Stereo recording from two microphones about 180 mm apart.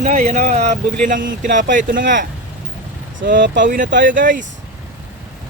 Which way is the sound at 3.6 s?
45° right (ahead or behind).